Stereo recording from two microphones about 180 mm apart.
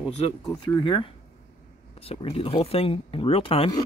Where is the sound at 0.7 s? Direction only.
25° left (ahead or behind).